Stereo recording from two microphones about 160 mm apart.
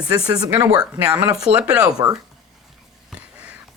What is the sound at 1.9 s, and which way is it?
Speech, 25° right (ahead or behind).